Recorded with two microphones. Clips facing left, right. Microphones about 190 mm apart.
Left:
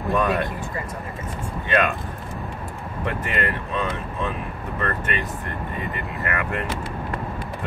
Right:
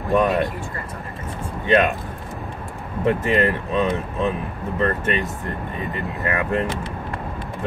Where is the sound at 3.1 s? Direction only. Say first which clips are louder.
Right 8 dB; 25° right (ahead or behind).